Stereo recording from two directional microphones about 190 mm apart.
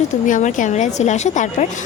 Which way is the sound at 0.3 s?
40° left (ahead or behind).